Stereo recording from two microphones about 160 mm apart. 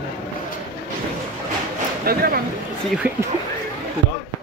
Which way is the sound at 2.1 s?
70° right (ahead or behind).